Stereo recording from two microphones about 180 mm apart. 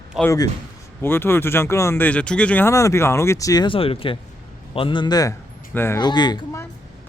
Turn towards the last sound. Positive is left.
turn(degrees=20)  # may be behind; listen again after turning